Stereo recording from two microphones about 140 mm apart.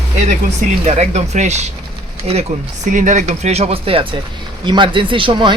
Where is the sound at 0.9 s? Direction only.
55° right (ahead or behind).